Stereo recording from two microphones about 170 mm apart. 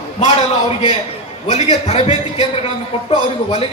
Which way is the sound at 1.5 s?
40° left (ahead or behind).